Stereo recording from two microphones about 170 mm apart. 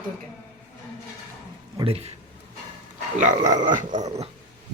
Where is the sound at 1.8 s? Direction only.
35° right (ahead or behind).